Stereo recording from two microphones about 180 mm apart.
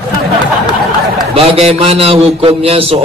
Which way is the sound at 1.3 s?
35° right (ahead or behind).